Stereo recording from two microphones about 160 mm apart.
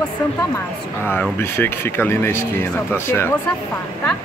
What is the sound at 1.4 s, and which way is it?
Speech, 15° left (ahead or behind).